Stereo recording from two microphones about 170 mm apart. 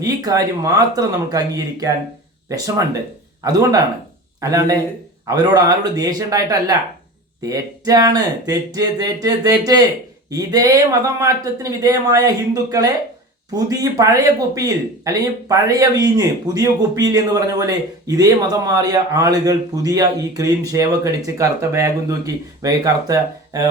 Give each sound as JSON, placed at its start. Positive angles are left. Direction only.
{"t": 0.0, "sound": "speech", "side_deg": -20}
{"t": 13.5, "sound": "speech", "side_deg": -20}